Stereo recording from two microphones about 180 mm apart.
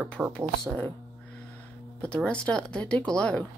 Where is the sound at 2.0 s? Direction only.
5° left (ahead or behind).